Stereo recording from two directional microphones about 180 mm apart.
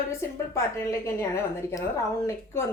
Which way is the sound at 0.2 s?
15° left (ahead or behind).